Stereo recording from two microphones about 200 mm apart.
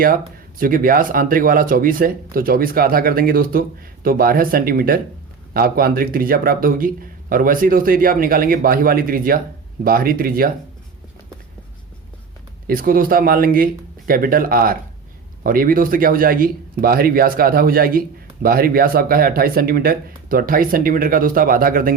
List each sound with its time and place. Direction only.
0.6 s speech: 45° right (ahead or behind)
12.6 s speech: 45° right (ahead or behind)